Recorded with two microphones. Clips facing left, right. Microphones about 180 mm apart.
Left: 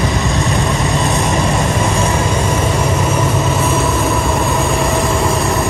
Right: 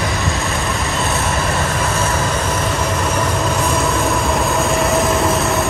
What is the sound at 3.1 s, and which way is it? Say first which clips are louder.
Vehicle: left 2 dB; 5° left (ahead or behind).